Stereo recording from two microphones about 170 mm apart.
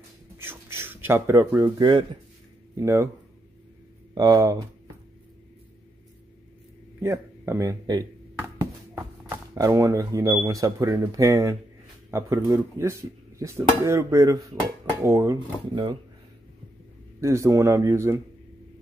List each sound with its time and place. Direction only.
0.4 s a sound: 15° right (ahead or behind)
1.8 s speech: 25° right (ahead or behind)
2.7 s speech: 15° right (ahead or behind)
4.1 s speech: 20° right (ahead or behind)
7.0 s speech: 15° right (ahead or behind)
17.2 s speech: 15° right (ahead or behind)